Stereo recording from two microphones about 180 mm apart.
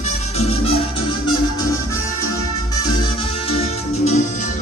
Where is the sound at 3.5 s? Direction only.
40° left (ahead or behind).